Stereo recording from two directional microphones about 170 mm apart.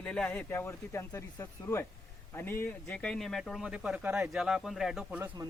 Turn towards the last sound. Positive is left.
turn(degrees=0)  # may be behind; listen again after turning